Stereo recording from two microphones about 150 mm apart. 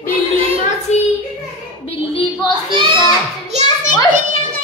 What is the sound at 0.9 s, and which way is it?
Child singing, 50° left (ahead or behind).